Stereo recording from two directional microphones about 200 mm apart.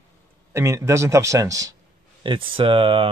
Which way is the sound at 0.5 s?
15° right (ahead or behind).